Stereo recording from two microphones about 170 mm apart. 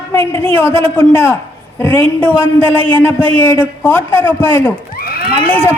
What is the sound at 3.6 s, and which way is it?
A man's voice, 10° left (ahead or behind).